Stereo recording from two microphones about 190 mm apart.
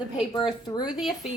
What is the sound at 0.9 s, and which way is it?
Speech, centre (ahead or behind).